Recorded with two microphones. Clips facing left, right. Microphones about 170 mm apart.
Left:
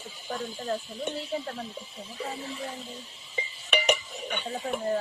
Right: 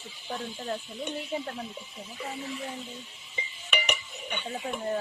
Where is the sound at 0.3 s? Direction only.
40° left (ahead or behind).